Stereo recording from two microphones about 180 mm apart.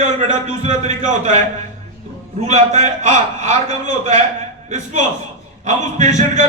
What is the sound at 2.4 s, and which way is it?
A man's voice, 40° right (ahead or behind).